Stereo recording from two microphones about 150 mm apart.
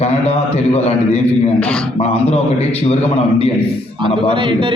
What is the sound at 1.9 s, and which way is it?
A man's voice, 40° left (ahead or behind).